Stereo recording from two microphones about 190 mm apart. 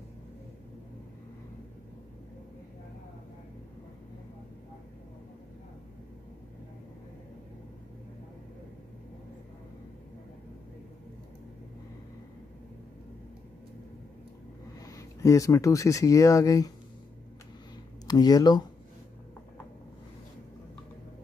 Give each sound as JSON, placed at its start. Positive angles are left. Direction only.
{"t": 14.9, "sound": "speech", "side_deg": 15}
{"t": 18.0, "sound": "speech", "side_deg": 20}